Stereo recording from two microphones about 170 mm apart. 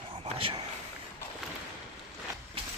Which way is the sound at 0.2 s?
30° right (ahead or behind).